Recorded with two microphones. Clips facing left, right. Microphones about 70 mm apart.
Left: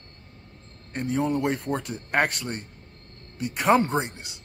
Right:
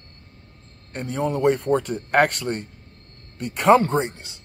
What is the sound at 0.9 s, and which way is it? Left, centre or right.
Speech, centre.